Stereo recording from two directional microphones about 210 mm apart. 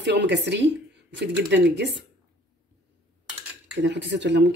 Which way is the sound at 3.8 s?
55° right (ahead or behind).